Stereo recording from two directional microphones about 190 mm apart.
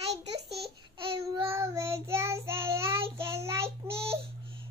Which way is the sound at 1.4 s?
15° right (ahead or behind).